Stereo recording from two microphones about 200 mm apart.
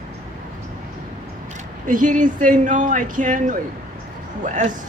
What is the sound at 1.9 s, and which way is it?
A man's voice, 40° right (ahead or behind).